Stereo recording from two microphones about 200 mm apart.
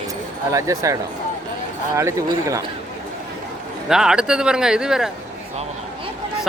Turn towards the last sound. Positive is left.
turn(degrees=-5)  # may be behind; listen again after turning